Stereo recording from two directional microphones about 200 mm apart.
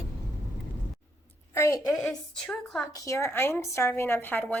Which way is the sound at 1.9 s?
Centre (ahead or behind).